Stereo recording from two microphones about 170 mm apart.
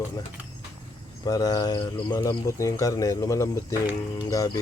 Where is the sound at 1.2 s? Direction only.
20° left (ahead or behind).